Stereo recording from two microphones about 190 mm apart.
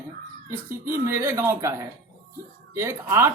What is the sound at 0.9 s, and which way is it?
Speech, 15° right (ahead or behind).